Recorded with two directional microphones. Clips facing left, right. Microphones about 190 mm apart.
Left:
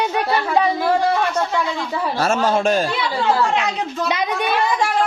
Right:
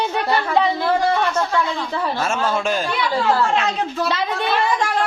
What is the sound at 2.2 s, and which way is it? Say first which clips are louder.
Speech: left 6 dB; 40° left (ahead or behind).